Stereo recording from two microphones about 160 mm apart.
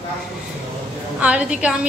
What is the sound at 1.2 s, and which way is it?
Speech, 5° right (ahead or behind).